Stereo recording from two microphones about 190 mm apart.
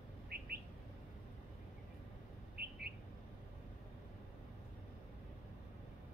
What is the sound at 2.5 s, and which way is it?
Bird, 55° right (ahead or behind).